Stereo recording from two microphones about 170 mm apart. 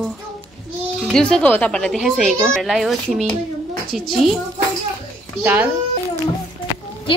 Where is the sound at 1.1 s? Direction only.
5° left (ahead or behind).